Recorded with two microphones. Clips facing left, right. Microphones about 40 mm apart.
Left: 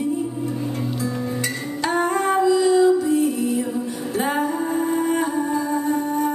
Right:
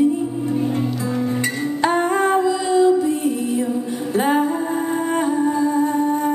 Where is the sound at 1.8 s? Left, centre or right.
Right.